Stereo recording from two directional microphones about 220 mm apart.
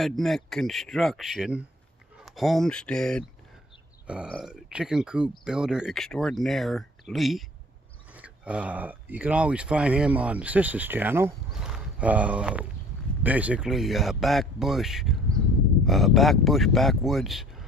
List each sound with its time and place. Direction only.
0.0 s speech: centre (ahead or behind)